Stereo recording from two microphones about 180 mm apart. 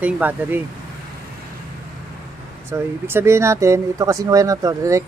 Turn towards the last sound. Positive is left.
turn(degrees=-15)  # may be behind; listen again after turning